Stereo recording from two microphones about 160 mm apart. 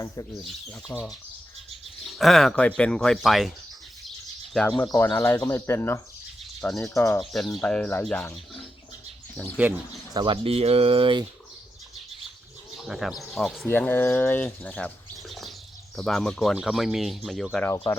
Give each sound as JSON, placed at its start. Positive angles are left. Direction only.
{"t": 0.9, "sound": "speech", "side_deg": 0}
{"t": 4.5, "sound": "speech", "side_deg": 5}
{"t": 6.4, "sound": "bird", "side_deg": 0}
{"t": 6.9, "sound": "speech", "side_deg": 20}
{"t": 7.2, "sound": "speech", "side_deg": 0}
{"t": 10.2, "sound": "speech", "side_deg": -35}
{"t": 12.7, "sound": "speech", "side_deg": 0}
{"t": 13.7, "sound": "speech", "side_deg": 10}